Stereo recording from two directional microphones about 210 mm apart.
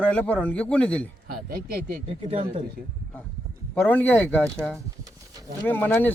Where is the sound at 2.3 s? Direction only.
30° right (ahead or behind).